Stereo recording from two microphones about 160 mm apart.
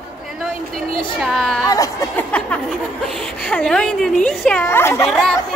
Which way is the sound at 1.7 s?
20° left (ahead or behind).